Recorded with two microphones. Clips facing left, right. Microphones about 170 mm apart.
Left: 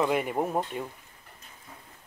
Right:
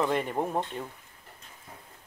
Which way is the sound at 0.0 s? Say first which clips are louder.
Left 1 dB; 10° left (ahead or behind).